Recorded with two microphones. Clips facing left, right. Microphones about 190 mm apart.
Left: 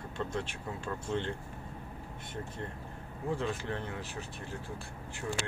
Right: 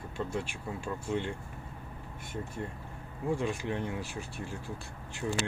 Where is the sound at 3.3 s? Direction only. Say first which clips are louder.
Right 3 dB; 15° right (ahead or behind).